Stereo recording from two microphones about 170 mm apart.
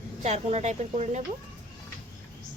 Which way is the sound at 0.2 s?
40° right (ahead or behind).